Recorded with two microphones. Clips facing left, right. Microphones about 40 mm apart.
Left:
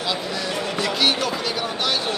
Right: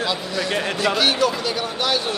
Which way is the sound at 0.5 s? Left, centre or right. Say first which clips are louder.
Right 4 dB; right.